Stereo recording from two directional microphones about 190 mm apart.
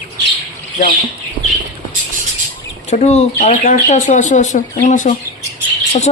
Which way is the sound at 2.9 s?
35° left (ahead or behind).